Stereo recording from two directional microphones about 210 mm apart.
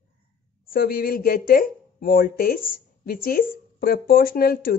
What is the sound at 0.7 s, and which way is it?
Speech, 45° left (ahead or behind).